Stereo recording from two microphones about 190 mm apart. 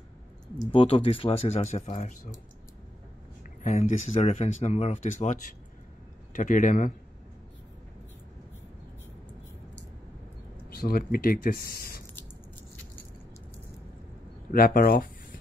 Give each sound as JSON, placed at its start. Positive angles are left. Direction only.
{"t": 0.7, "sound": "speech", "side_deg": 30}
{"t": 3.6, "sound": "speech", "side_deg": 35}
{"t": 10.7, "sound": "speech", "side_deg": 50}
{"t": 14.5, "sound": "speech", "side_deg": 50}